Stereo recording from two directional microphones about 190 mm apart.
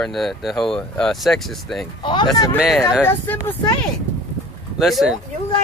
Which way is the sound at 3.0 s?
10° left (ahead or behind).